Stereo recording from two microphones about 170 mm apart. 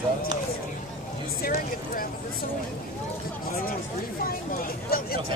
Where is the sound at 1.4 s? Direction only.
55° left (ahead or behind).